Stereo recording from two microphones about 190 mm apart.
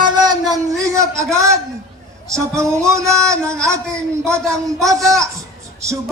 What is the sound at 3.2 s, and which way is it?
A man's voice, 5° left (ahead or behind).